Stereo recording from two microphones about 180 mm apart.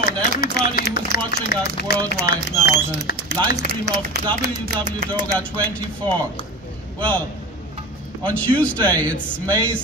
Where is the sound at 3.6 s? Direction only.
60° right (ahead or behind).